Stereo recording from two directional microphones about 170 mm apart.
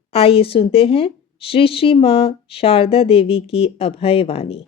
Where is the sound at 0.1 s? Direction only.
35° left (ahead or behind).